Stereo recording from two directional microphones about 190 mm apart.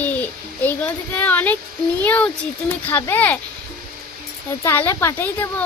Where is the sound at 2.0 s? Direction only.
10° left (ahead or behind).